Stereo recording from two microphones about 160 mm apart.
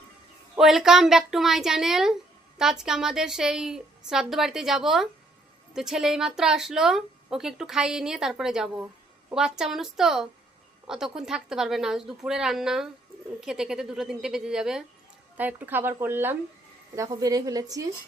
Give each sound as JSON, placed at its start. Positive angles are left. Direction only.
{"t": 0.5, "sound": "a woman's voice", "side_deg": 0}